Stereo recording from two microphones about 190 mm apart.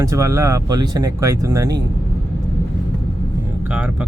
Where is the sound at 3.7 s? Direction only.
5° right (ahead or behind).